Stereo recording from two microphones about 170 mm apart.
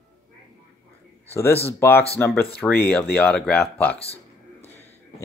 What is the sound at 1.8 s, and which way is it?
Speech, 15° left (ahead or behind).